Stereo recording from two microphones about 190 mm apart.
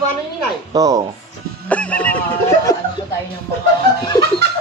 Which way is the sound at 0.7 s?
20° right (ahead or behind).